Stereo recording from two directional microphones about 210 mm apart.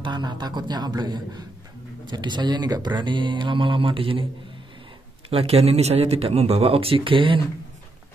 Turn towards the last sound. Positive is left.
turn(degrees=-25)  # may be behind; listen again after turning